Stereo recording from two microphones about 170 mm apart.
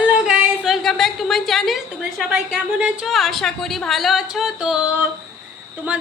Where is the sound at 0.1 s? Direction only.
5° right (ahead or behind).